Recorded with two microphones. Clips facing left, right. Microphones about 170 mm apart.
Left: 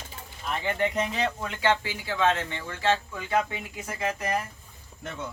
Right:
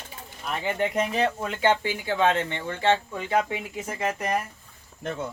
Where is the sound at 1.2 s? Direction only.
30° right (ahead or behind).